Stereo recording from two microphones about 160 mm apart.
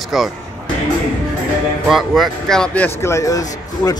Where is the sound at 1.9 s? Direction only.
Centre (ahead or behind).